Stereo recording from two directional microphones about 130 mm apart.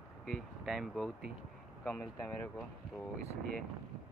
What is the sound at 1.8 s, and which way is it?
Speech, 10° left (ahead or behind).